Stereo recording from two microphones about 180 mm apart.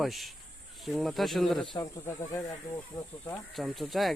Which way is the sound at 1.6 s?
25° left (ahead or behind).